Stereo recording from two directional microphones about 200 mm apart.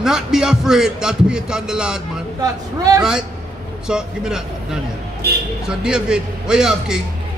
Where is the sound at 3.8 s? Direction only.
5° right (ahead or behind).